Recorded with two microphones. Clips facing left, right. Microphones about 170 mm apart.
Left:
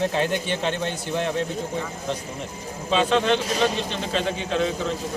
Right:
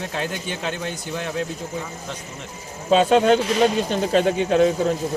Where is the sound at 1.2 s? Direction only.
30° left (ahead or behind).